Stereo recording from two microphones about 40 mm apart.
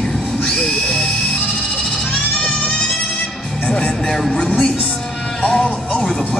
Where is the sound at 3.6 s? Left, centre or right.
Left.